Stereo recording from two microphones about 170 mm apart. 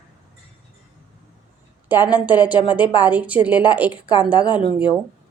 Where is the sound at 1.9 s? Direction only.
25° left (ahead or behind).